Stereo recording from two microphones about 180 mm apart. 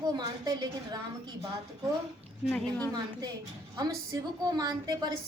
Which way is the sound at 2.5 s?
10° left (ahead or behind).